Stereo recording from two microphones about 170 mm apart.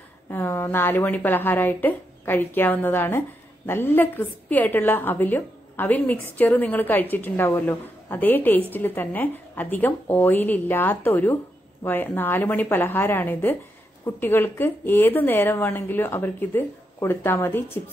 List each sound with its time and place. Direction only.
0.3 s a woman's voice: 15° left (ahead or behind)